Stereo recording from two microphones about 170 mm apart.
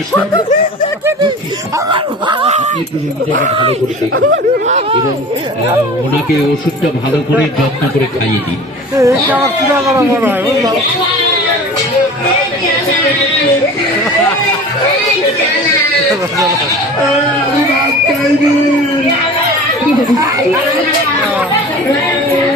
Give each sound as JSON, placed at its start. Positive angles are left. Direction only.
{"t": 1.9, "sound": "speech", "side_deg": -30}
{"t": 9.0, "sound": "speech", "side_deg": -15}